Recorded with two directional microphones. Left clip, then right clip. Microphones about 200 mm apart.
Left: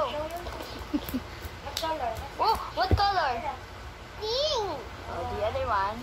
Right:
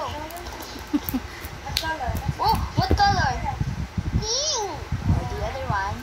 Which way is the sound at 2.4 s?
5° left (ahead or behind).